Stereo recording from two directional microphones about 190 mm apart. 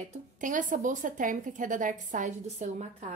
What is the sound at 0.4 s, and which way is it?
A woman's voice, 45° right (ahead or behind).